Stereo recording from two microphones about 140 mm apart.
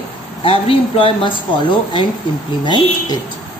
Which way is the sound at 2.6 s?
35° left (ahead or behind).